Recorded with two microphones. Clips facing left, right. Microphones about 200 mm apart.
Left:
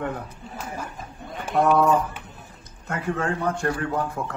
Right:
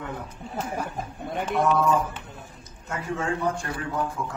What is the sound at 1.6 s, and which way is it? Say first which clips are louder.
A man's voice: left 4 dB; 60° left (ahead or behind).